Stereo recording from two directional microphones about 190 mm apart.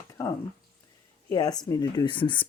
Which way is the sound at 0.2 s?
15° left (ahead or behind).